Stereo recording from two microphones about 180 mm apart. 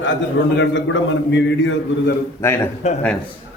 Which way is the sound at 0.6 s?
85° left.